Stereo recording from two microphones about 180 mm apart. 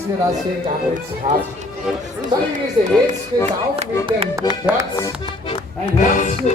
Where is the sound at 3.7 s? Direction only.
30° right (ahead or behind).